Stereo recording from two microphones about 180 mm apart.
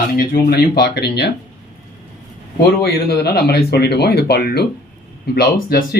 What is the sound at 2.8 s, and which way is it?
Speech, 60° left (ahead or behind).